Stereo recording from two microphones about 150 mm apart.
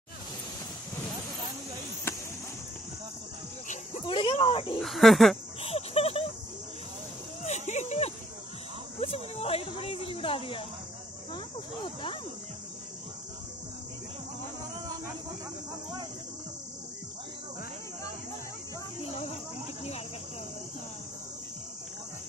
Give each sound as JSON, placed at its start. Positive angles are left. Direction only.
{"t": 4.0, "sound": "speech", "side_deg": 35}
{"t": 4.8, "sound": "speech", "side_deg": 0}
{"t": 5.6, "sound": "cricket", "side_deg": 40}
{"t": 7.4, "sound": "a sound", "side_deg": 50}
{"t": 11.3, "sound": "cricket", "side_deg": 35}